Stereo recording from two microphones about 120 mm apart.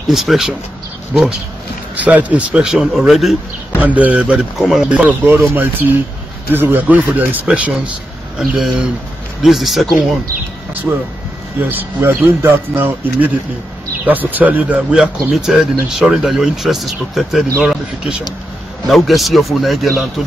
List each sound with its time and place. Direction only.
0.1 s speech: centre (ahead or behind)
2.0 s speech: 10° right (ahead or behind)
3.8 s speech: 10° right (ahead or behind)
10.9 s speech: 15° right (ahead or behind)
18.9 s speech: centre (ahead or behind)